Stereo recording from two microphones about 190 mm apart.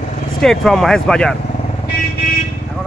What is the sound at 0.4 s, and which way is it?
Speech, centre (ahead or behind).